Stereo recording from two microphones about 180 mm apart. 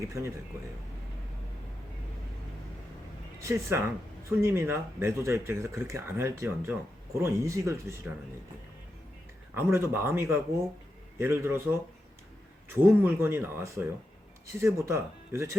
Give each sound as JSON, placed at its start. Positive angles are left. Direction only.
{"t": 0.0, "sound": "speech", "side_deg": -15}
{"t": 3.4, "sound": "speech", "side_deg": -15}
{"t": 9.6, "sound": "speech", "side_deg": -15}